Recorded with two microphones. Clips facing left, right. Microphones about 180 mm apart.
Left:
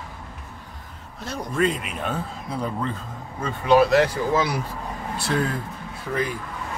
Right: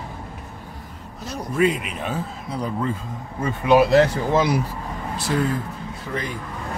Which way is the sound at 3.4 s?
15° right (ahead or behind).